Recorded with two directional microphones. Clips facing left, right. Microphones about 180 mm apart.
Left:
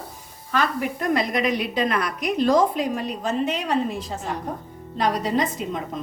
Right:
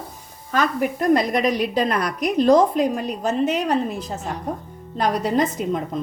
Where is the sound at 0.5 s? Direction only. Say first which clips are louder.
Right 3 dB; 45° right (ahead or behind).